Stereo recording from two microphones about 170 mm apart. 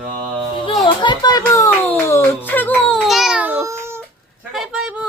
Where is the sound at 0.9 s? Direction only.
25° left (ahead or behind); by 4.0 s 15° right (ahead or behind).